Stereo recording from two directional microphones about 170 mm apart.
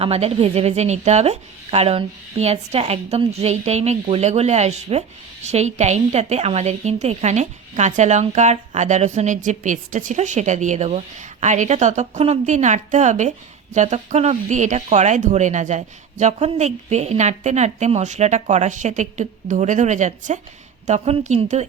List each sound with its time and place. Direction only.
0.0 s speech: 35° right (ahead or behind)